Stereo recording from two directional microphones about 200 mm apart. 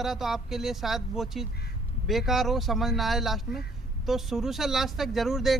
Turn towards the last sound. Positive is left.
turn(degrees=0)  # may be behind; listen again after turning